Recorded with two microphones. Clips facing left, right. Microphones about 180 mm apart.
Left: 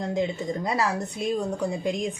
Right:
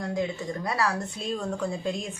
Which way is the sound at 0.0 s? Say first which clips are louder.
Left 3 dB; 20° left (ahead or behind).